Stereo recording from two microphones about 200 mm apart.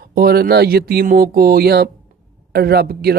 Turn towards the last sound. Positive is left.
turn(degrees=-50)  # may be behind; listen again after turning